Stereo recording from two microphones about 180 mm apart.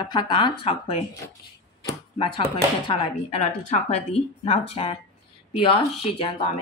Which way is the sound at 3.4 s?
35° left (ahead or behind).